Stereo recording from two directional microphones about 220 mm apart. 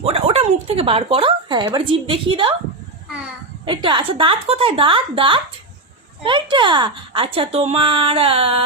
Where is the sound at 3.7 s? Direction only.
20° right (ahead or behind).